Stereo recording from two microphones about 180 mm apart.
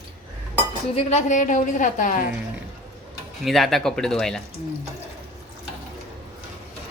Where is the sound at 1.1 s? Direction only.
45° left (ahead or behind).